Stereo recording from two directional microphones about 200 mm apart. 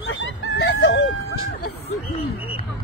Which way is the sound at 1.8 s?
30° left (ahead or behind).